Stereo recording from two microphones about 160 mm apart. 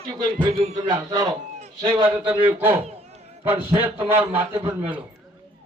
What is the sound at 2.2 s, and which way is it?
Speech, 10° right (ahead or behind).